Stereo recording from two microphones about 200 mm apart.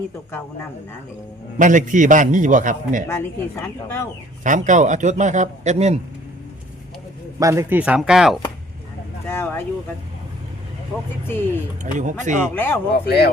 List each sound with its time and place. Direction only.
1.5 s a man's voice: 40° right (ahead or behind)
3.1 s speech: 10° left (ahead or behind)
4.4 s a man's voice: 40° right (ahead or behind)
7.3 s speech: 15° right (ahead or behind)
9.2 s speech: 10° left (ahead or behind)
11.8 s a man's voice: 40° right (ahead or behind)
12.5 s speech: 10° left (ahead or behind)
12.9 s speech: 55° left (ahead or behind)